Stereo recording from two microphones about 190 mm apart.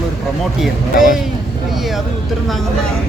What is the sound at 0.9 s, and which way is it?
Speech, 45° left (ahead or behind).